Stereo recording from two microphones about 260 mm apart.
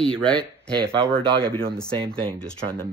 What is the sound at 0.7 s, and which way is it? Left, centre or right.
Speech, centre.